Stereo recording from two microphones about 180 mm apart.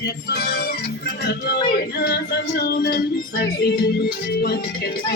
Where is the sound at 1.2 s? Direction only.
65° left (ahead or behind).